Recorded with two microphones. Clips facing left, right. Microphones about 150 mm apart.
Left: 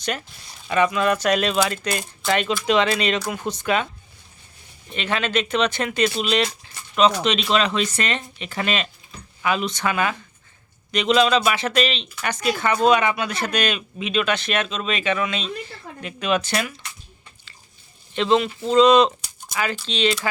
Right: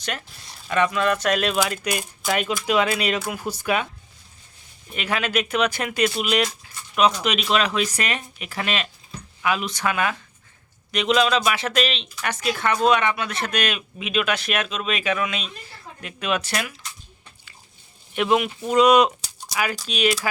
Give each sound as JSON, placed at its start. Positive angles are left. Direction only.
{"t": 0.0, "sound": "speech", "side_deg": 0}
{"t": 4.9, "sound": "speech", "side_deg": -5}
{"t": 18.1, "sound": "speech", "side_deg": -10}
{"t": 19.2, "sound": "a sound", "side_deg": -85}
{"t": 19.9, "sound": "speech", "side_deg": -10}